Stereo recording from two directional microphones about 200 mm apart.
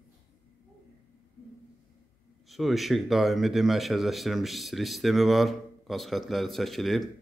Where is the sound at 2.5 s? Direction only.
Centre (ahead or behind).